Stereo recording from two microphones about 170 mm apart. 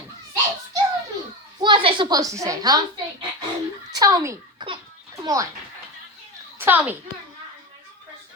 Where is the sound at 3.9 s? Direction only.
20° right (ahead or behind).